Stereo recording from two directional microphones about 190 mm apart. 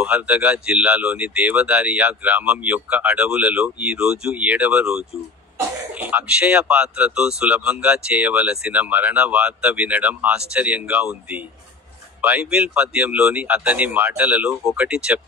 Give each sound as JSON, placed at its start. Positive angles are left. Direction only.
{"t": 0.0, "sound": "speech", "side_deg": -5}